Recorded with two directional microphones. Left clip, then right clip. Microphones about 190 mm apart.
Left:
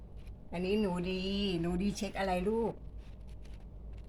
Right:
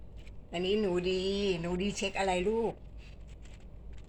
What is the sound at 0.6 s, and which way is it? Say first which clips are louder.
Speech: right 4 dB; 20° right (ahead or behind).